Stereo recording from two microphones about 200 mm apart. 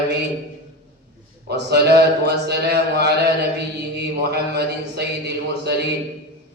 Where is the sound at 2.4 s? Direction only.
55° right (ahead or behind).